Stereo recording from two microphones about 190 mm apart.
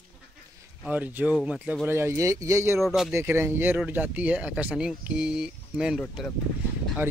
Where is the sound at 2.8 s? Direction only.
Centre (ahead or behind).